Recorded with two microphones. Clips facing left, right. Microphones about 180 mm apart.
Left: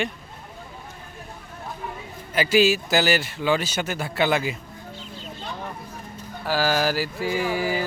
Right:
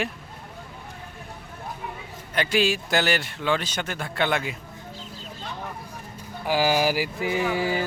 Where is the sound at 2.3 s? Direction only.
5° left (ahead or behind).